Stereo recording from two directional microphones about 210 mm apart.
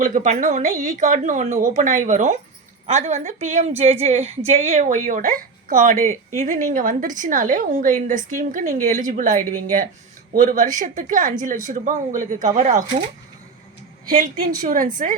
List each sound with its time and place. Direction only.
0.0 s a woman's voice: 35° right (ahead or behind)
9.4 s speech: 10° left (ahead or behind)
10.3 s a woman's voice: 40° right (ahead or behind)
14.1 s a woman's voice: 40° right (ahead or behind)